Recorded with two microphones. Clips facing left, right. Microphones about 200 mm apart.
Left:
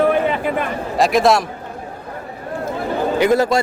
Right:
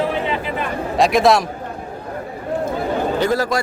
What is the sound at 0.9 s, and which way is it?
Speech, centre (ahead or behind).